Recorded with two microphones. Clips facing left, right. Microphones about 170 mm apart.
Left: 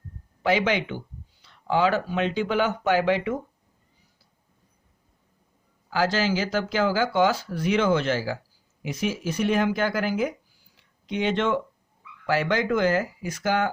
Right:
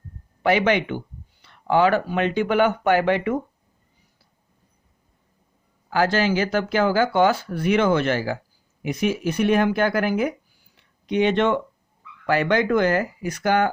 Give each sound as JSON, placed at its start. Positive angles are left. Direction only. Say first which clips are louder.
{"t": 0.4, "sound": "speech", "louder": "right 4 dB", "side_deg": -60}
{"t": 5.9, "sound": "speech", "louder": "right 3 dB", "side_deg": -55}
{"t": 10.8, "sound": "a sound", "louder": "right 7 dB", "side_deg": -60}
{"t": 12.2, "sound": "speech", "louder": "right 4 dB", "side_deg": -55}